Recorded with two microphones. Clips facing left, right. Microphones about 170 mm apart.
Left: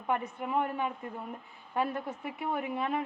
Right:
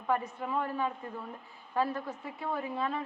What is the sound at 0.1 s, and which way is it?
A man's voice, 20° left (ahead or behind).